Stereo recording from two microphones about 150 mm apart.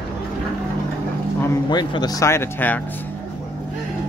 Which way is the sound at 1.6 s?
30° left (ahead or behind).